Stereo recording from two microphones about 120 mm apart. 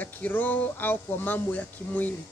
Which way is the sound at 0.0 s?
15° left (ahead or behind).